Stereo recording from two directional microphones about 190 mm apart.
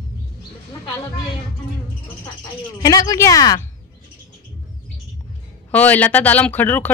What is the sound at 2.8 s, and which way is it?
Speech, 20° left (ahead or behind).